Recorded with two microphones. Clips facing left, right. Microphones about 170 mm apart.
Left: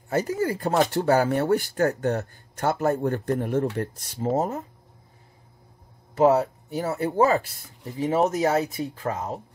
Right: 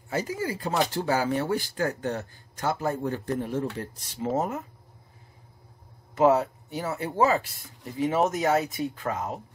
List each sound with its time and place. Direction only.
0.1 s speech: 45° left (ahead or behind)
4.4 s speech: 35° left (ahead or behind)
6.1 s speech: 35° left (ahead or behind)